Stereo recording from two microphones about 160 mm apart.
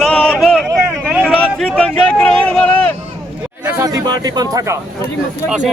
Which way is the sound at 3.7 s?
20° right (ahead or behind).